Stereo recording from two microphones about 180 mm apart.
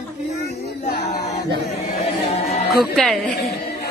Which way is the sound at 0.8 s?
40° left (ahead or behind).